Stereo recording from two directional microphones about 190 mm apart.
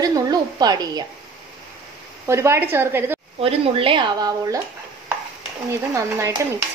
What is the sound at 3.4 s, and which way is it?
Speech, 30° right (ahead or behind).